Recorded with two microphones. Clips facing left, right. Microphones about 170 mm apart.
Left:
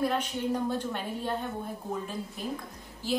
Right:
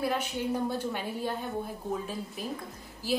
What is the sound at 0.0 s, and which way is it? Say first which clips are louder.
A woman's voice: left 1 dB; 5° right (ahead or behind).